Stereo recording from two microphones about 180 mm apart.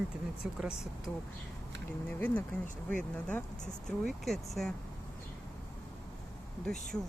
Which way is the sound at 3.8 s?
Centre (ahead or behind).